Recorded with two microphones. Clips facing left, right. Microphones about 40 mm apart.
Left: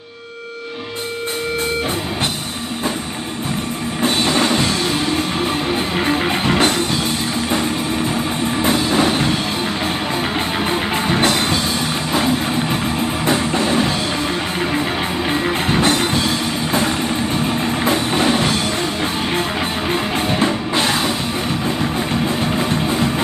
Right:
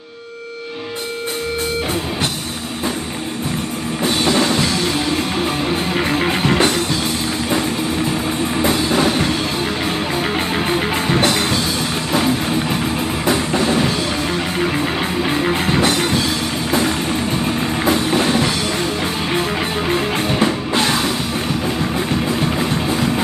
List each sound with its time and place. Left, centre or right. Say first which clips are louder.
4.3 s music: right 2 dB; left
5.9 s music: even; centre
8.6 s music: left 1 dB; left
11.1 s music: even; left
15.2 s music: right 1 dB; centre
17.8 s music: right 3 dB; left
19.9 s music: right 1 dB; centre